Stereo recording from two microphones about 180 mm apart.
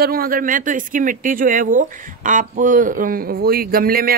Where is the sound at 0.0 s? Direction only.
55° right (ahead or behind).